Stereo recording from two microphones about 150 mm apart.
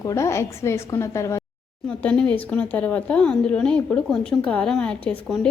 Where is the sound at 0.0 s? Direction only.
20° left (ahead or behind).